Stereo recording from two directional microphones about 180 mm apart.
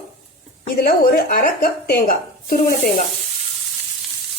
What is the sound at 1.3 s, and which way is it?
Speech, 55° left (ahead or behind).